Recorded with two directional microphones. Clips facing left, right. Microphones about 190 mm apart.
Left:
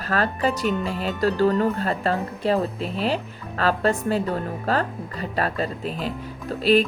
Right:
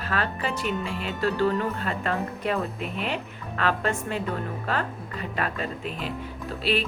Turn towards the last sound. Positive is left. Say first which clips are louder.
# left 8 dB
turn(degrees=40)  # may be behind; listen again after turning